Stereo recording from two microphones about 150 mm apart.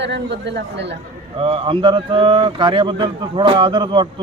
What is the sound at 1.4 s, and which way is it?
A man's voice, 35° right (ahead or behind).